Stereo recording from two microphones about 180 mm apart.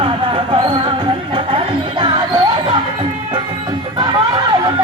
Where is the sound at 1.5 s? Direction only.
25° right (ahead or behind).